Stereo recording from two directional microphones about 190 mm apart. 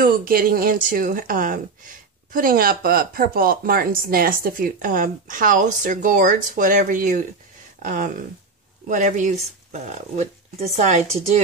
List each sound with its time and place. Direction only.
0.0 s speech: 50° right (ahead or behind); by 11.4 s 35° right (ahead or behind)